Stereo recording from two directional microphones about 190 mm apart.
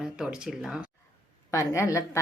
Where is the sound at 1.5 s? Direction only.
15° left (ahead or behind).